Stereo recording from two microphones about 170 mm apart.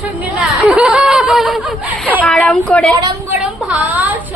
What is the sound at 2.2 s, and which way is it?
Speech, 10° left (ahead or behind).